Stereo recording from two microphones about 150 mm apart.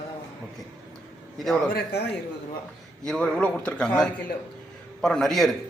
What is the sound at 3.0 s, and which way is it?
Speech, 5° left (ahead or behind).